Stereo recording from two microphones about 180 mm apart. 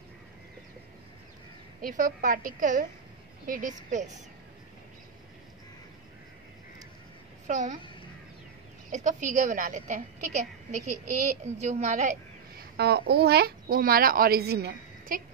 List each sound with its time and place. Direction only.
1.8 s a woman's voice: 45° right (ahead or behind)
7.4 s a woman's voice: 40° right (ahead or behind)
8.9 s a woman's voice: 45° right (ahead or behind)
12.7 s a child's voice: 65° right (ahead or behind)